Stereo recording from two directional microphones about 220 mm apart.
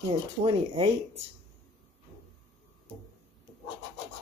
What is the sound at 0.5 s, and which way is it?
Speech, 25° right (ahead or behind).